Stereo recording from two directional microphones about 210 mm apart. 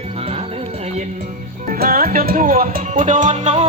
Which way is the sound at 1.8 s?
45° right (ahead or behind).